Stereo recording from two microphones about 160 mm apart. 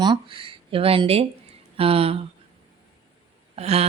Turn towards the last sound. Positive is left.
turn(degrees=-40)  # may be behind; listen again after turning